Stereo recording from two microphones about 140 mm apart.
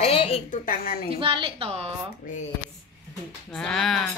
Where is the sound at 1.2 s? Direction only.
40° right (ahead or behind).